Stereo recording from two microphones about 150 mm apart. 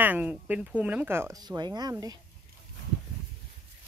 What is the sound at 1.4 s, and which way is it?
Speech, 30° right (ahead or behind).